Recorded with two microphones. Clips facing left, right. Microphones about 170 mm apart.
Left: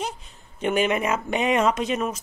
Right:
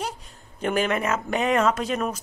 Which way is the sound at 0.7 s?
5° left (ahead or behind).